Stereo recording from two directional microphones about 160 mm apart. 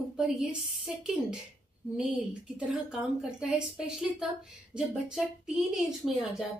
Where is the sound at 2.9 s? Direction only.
5° right (ahead or behind).